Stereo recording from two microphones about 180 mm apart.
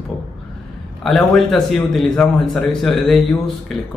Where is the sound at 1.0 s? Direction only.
Centre (ahead or behind).